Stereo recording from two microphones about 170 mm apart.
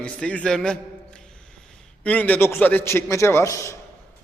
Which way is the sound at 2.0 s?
10° left (ahead or behind).